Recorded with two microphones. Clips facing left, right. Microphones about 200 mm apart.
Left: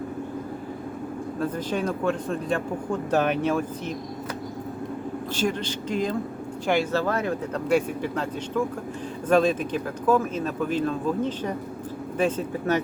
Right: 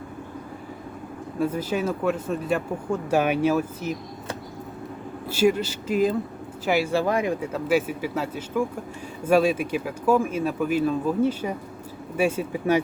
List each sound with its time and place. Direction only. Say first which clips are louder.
1.4 s speech: right 3 dB; 10° right (ahead or behind)
5.3 s speech: right 7 dB; 10° right (ahead or behind)